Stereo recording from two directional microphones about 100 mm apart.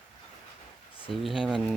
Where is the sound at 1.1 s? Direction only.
Centre (ahead or behind).